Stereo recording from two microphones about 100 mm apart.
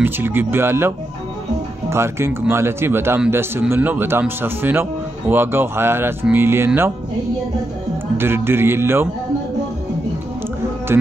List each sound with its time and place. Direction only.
0.0 s speech: 20° right (ahead or behind)
8.2 s speech: 25° right (ahead or behind)
10.9 s speech: 25° right (ahead or behind)